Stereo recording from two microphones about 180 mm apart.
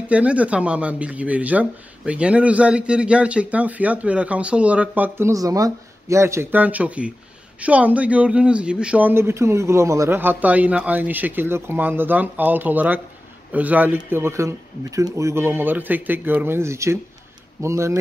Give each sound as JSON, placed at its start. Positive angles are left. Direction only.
{"t": 0.1, "sound": "speech", "side_deg": -5}